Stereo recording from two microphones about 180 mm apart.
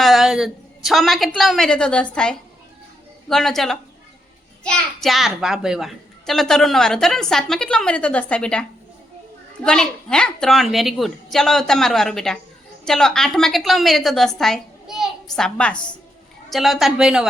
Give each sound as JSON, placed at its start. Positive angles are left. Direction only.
{"t": 0.0, "sound": "a woman's voice", "side_deg": 0}
{"t": 9.6, "sound": "a child's voice", "side_deg": 5}